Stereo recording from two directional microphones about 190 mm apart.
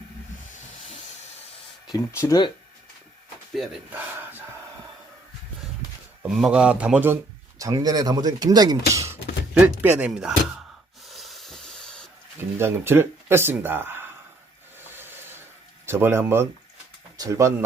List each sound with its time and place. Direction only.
1.9 s speech: 15° left (ahead or behind)
3.5 s battle cry: 5° right (ahead or behind)
6.3 s a man's voice: 5° right (ahead or behind)
7.6 s speech: 20° right (ahead or behind)
8.9 s a sound: 15° right (ahead or behind)
9.6 s a man's voice: 10° right (ahead or behind)
11.1 s hiss: centre (ahead or behind)
12.4 s speech: 10° right (ahead or behind)
14.9 s filing: 10° right (ahead or behind)
15.9 s a man's voice: 10° right (ahead or behind)